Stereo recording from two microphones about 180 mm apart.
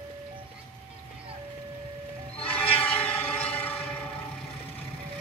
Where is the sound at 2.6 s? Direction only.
10° left (ahead or behind).